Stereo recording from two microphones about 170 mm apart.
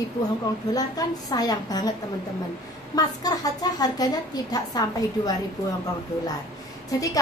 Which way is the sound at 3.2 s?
20° left (ahead or behind).